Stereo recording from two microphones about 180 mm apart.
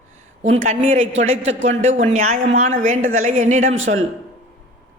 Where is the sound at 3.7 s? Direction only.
90° right.